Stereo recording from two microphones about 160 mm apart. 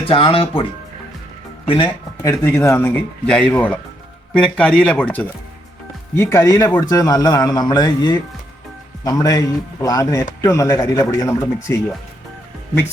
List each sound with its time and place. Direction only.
0.0 s speech: 35° left (ahead or behind)
1.6 s speech: 30° left (ahead or behind)
2.2 s a man's voice: 15° left (ahead or behind)